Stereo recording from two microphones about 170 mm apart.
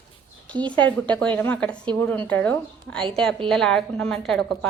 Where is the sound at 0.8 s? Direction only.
10° left (ahead or behind).